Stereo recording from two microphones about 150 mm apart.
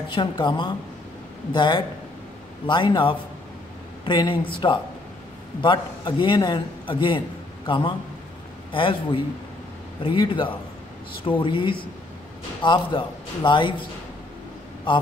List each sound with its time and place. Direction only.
0.1 s a man's voice: 30° left (ahead or behind)